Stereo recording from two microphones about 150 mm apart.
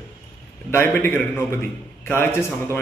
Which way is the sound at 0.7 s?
15° left (ahead or behind).